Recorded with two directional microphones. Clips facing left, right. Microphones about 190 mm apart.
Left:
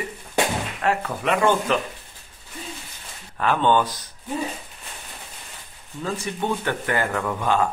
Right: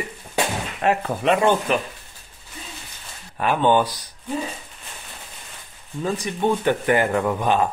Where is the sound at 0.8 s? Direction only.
25° right (ahead or behind).